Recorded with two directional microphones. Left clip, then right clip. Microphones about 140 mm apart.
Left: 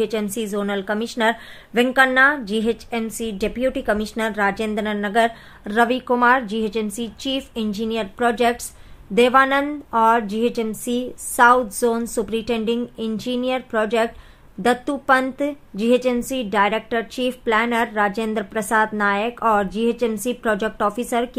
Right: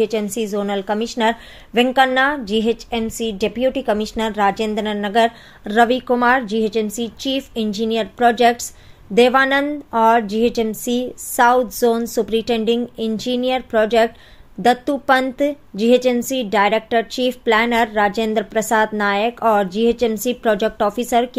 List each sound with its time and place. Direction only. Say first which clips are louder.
0.0 s a woman's voice: right 3 dB; 15° right (ahead or behind)